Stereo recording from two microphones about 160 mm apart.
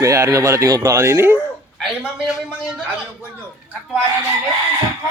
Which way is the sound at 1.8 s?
Centre (ahead or behind).